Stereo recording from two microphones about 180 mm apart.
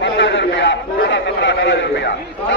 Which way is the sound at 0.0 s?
85° left.